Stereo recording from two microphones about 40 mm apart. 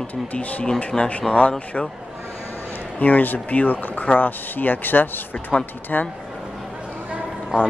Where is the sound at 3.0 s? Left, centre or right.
Left.